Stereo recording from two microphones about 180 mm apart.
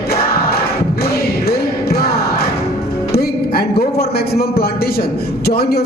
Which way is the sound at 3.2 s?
60° left (ahead or behind).